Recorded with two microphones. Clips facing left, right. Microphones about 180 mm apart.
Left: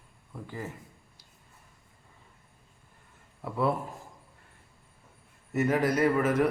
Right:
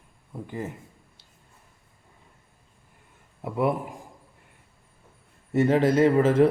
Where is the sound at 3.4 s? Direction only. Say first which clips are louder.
Right 3 dB; 20° right (ahead or behind).